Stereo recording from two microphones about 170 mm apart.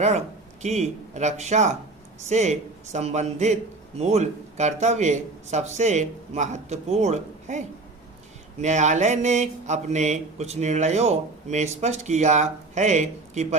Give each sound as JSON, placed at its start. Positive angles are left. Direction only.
{"t": 0.6, "sound": "a man's voice", "side_deg": -40}
{"t": 8.6, "sound": "a man's voice", "side_deg": -45}